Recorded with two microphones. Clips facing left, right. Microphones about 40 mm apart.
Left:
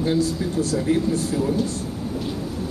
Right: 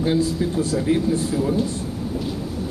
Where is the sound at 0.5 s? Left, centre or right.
Centre.